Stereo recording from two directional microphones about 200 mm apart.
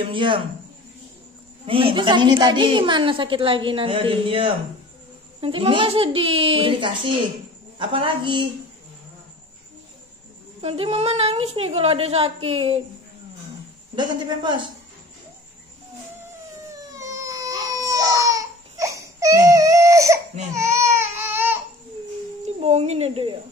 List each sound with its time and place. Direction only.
0.0 s a woman's voice: 25° right (ahead or behind)
1.7 s a woman's voice: 25° right (ahead or behind)
10.6 s a woman's voice: 30° right (ahead or behind)
13.9 s a woman's voice: 25° right (ahead or behind)
16.9 s baby cry: 15° right (ahead or behind)
22.6 s speech: 30° right (ahead or behind)